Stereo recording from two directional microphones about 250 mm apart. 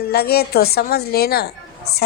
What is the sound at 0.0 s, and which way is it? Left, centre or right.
Speech, left.